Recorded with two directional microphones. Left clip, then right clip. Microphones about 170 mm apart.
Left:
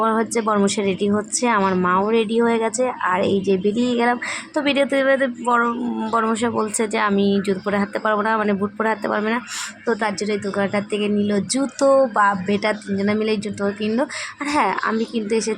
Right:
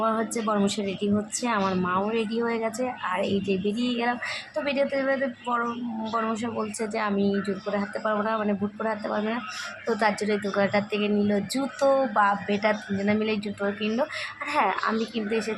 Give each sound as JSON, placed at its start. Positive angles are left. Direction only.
{"t": 0.0, "sound": "a woman's voice", "side_deg": 30}